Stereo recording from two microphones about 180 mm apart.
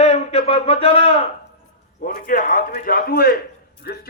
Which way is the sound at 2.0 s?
50° left (ahead or behind).